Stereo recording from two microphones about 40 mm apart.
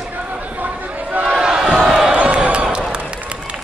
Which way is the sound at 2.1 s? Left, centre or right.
Right.